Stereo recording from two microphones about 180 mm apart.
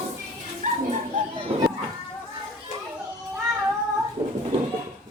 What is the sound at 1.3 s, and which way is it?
Children playing, 30° right (ahead or behind).